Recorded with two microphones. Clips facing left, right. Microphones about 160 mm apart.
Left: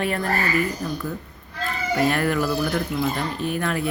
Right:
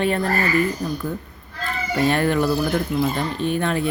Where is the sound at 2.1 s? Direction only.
25° right (ahead or behind).